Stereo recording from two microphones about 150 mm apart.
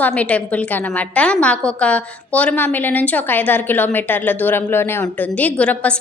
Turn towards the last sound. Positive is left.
turn(degrees=5)  # may be behind; listen again after turning